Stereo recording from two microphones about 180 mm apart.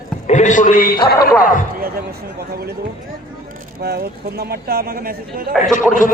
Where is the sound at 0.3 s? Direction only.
40° left (ahead or behind).